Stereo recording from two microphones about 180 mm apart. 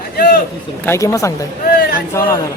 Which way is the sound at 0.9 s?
15° left (ahead or behind).